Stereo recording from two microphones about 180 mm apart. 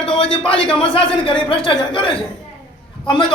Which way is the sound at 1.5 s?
30° left (ahead or behind).